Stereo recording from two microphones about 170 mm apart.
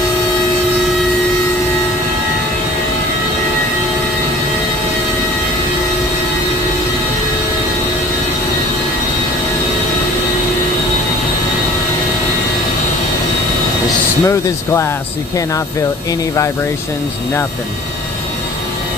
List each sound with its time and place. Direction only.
14.2 s speech: 15° left (ahead or behind)